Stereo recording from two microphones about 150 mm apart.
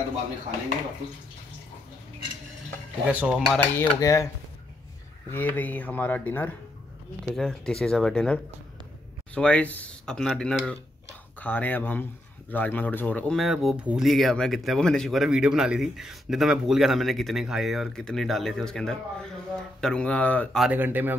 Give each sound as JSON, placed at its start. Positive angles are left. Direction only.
{"t": 3.1, "sound": "speech", "side_deg": -10}
{"t": 3.5, "sound": "cutlery", "side_deg": 15}
{"t": 5.3, "sound": "speech", "side_deg": 10}
{"t": 20.6, "sound": "speech", "side_deg": -10}